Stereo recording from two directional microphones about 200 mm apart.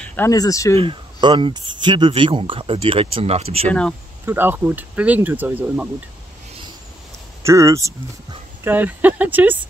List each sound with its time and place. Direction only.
0.0 s speech: 10° left (ahead or behind)
0.7 s speech: 25° right (ahead or behind)
3.6 s speech: 5° left (ahead or behind)
4.3 s speech: 10° right (ahead or behind)
7.4 s speech: 15° right (ahead or behind)